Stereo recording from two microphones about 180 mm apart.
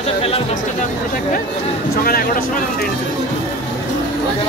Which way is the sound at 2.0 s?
55° left (ahead or behind).